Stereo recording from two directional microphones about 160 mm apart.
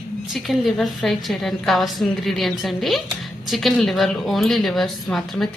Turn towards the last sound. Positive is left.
turn(degrees=0)  # may be behind; listen again after turning